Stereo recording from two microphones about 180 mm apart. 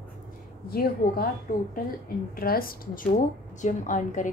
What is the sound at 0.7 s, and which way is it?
Speech, 55° left (ahead or behind).